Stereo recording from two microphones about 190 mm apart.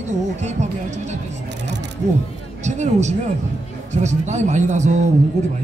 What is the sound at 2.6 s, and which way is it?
Speech, 40° right (ahead or behind).